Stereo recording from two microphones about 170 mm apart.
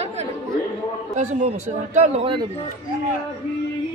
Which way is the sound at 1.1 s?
45° right (ahead or behind).